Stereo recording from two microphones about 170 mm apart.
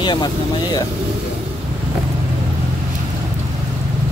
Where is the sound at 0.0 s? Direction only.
25° left (ahead or behind).